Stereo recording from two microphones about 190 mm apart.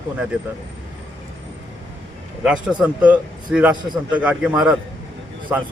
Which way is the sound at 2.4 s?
5° right (ahead or behind).